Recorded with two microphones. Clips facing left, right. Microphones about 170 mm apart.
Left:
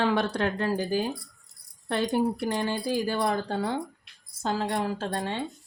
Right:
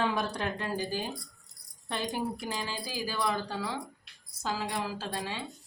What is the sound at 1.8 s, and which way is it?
Speech, 65° left (ahead or behind).